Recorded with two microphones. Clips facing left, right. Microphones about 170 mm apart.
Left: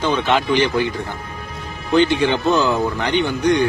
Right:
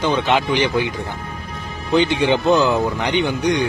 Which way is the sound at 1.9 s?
15° right (ahead or behind).